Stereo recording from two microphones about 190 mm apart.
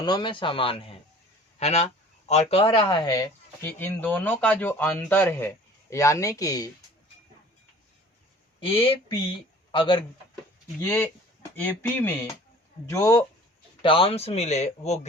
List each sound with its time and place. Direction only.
0.0 s speech: 25° left (ahead or behind)
8.6 s speech: 30° left (ahead or behind)
10.8 s speech: 10° left (ahead or behind)
13.8 s a man's voice: 30° left (ahead or behind)